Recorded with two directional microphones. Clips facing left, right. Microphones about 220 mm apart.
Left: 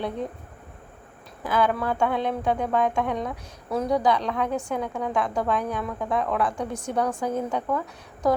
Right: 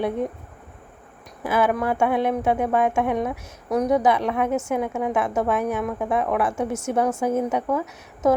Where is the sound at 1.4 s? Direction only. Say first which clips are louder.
Right 2 dB; 25° right (ahead or behind).